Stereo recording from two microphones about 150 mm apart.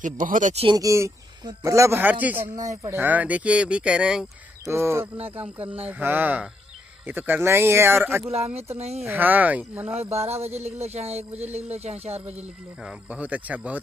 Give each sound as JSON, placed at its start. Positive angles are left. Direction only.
{"t": 0.0, "sound": "speech", "side_deg": -60}
{"t": 0.7, "sound": "a man's voice", "side_deg": -20}
{"t": 4.6, "sound": "speech", "side_deg": -20}
{"t": 8.3, "sound": "speech", "side_deg": -45}
{"t": 9.0, "sound": "speech", "side_deg": -10}
{"t": 10.1, "sound": "speech", "side_deg": -45}
{"t": 12.8, "sound": "speech", "side_deg": -10}